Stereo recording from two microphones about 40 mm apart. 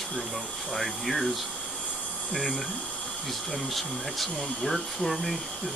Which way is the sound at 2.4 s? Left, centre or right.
Centre.